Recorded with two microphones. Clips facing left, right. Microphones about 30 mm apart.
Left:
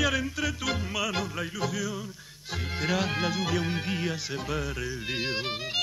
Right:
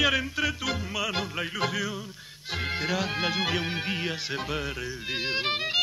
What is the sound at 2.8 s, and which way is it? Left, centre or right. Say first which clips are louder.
Music: left 4 dB; centre.